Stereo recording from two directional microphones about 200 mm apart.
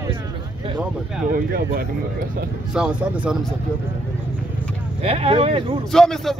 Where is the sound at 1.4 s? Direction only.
45° right (ahead or behind).